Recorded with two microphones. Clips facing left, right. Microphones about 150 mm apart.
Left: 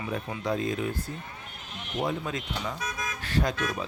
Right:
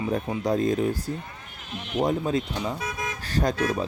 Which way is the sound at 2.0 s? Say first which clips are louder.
Right 7 dB; 35° right (ahead or behind).